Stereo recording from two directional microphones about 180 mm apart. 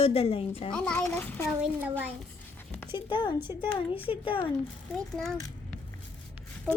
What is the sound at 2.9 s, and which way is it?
Speech, 25° left (ahead or behind).